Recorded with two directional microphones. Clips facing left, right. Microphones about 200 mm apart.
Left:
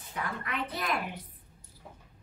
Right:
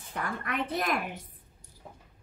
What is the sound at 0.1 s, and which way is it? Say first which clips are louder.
A woman's voice: right 2 dB; 50° right (ahead or behind).